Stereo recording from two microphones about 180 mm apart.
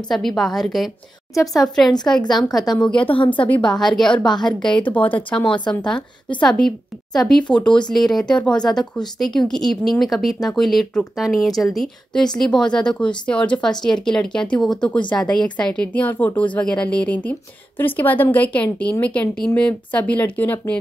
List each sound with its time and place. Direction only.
0.1 s speech: centre (ahead or behind)
3.1 s a woman's voice: 30° left (ahead or behind)
3.3 s a woman's voice: 10° left (ahead or behind)